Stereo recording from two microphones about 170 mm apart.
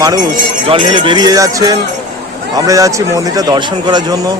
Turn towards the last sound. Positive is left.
turn(degrees=-25)  # may be behind; listen again after turning